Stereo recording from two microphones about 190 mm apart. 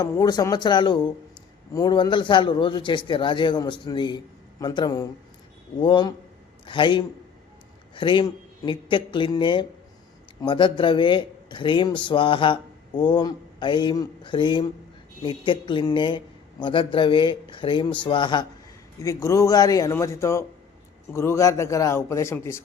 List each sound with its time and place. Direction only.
0.0 s a man's voice: 20° left (ahead or behind)